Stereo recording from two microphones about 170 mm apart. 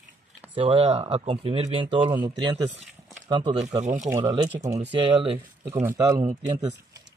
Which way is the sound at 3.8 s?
45° right (ahead or behind).